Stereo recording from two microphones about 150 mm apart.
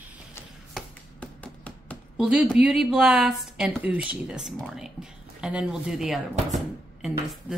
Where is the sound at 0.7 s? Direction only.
10° left (ahead or behind).